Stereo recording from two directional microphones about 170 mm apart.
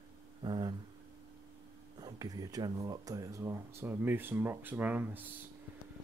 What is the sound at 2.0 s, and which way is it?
Speech, 25° right (ahead or behind).